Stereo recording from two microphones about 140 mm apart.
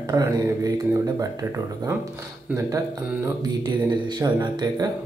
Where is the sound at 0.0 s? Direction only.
25° right (ahead or behind).